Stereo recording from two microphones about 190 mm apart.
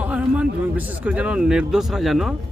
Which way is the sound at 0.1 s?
5° right (ahead or behind).